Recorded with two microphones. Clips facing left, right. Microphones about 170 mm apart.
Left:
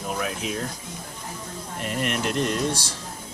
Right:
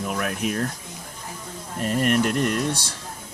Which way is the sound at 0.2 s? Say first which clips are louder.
Right 3 dB; 55° right (ahead or behind).